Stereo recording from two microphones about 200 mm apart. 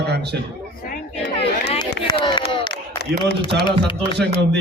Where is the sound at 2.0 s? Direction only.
20° left (ahead or behind).